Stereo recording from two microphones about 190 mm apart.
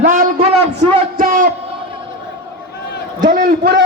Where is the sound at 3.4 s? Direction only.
60° right (ahead or behind).